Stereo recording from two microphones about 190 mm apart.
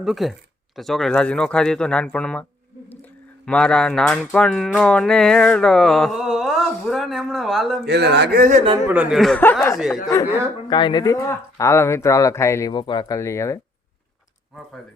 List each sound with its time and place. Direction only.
0.0 s speech: centre (ahead or behind)
3.4 s music: 5° left (ahead or behind)
7.9 s speech: 60° right (ahead or behind); by 8.6 s 45° right (ahead or behind)
8.9 s speech: 5° right (ahead or behind); by 9.7 s 10° left (ahead or behind)
9.7 s speech: centre (ahead or behind)
10.7 s speech: 25° left (ahead or behind)